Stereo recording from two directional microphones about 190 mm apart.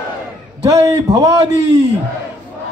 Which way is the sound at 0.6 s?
20° right (ahead or behind).